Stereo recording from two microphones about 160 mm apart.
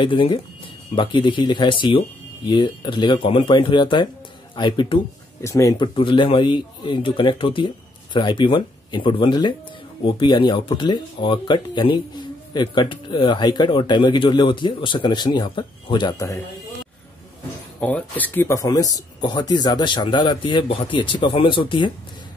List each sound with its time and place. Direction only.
0.0 s speech: 30° left (ahead or behind)
5.4 s speech: 20° left (ahead or behind)
5.9 s speech: 30° left (ahead or behind)
17.7 s speech: 10° left (ahead or behind); by 21.9 s 30° left (ahead or behind)